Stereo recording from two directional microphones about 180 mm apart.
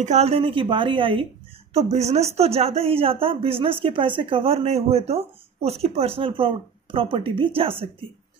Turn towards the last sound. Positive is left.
turn(degrees=-30)  # may be behind; listen again after turning